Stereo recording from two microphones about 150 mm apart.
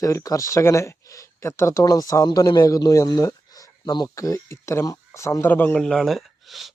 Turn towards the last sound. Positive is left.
turn(degrees=0)  # may be behind; listen again after turning